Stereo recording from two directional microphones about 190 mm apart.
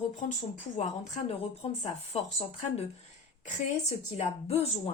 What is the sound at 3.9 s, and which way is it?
Speech, 35° left (ahead or behind).